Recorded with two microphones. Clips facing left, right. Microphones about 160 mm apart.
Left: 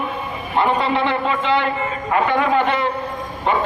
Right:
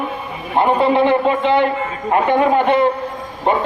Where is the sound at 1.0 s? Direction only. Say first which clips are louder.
Right 5 dB; 50° right (ahead or behind).